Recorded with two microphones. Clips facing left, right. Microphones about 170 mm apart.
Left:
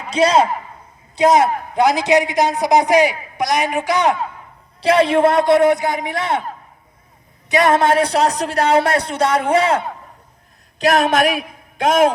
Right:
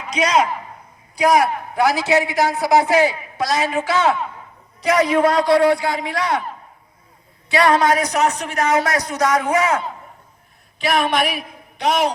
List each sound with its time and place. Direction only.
0.1 s a man's voice: 30° left (ahead or behind)
4.8 s speech: 30° left (ahead or behind)
7.5 s speech: 20° left (ahead or behind)
10.8 s a man's voice: 40° left (ahead or behind)